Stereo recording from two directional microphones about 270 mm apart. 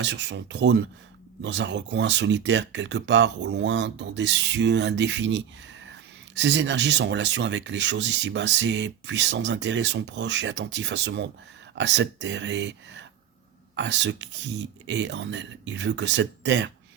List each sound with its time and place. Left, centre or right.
0.0 s speech: right